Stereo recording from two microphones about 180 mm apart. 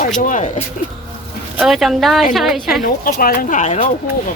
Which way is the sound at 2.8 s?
55° left (ahead or behind).